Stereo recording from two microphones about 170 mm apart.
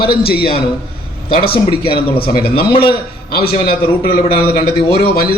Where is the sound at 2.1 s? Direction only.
65° left (ahead or behind).